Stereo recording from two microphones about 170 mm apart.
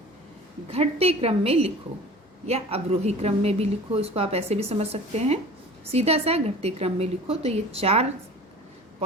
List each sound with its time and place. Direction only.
0.7 s a woman's voice: 35° right (ahead or behind)